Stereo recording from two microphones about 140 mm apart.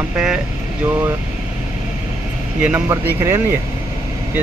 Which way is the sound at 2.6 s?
10° right (ahead or behind).